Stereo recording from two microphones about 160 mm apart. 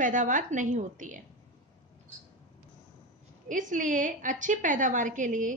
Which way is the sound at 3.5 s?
55° right (ahead or behind).